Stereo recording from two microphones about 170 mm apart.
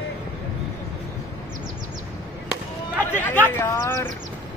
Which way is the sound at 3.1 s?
10° left (ahead or behind).